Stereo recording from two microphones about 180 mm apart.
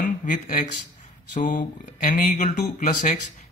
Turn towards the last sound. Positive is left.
turn(degrees=45)  # may be behind; listen again after turning